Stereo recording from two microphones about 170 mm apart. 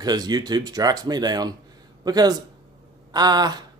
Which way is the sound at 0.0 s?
25° right (ahead or behind).